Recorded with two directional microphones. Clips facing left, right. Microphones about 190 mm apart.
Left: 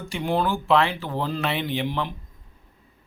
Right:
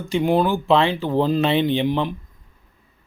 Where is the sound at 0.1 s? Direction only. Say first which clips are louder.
Right 6 dB; 15° right (ahead or behind).